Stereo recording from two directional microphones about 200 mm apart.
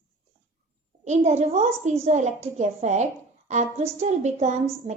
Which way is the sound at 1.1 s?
35° right (ahead or behind).